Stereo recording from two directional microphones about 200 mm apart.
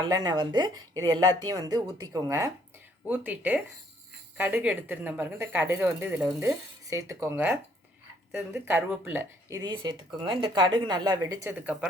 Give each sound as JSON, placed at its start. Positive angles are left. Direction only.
{"t": 0.0, "sound": "speech", "side_deg": -20}